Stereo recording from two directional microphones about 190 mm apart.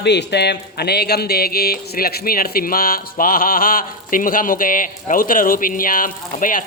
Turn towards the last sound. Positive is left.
turn(degrees=45)  # may be behind; listen again after turning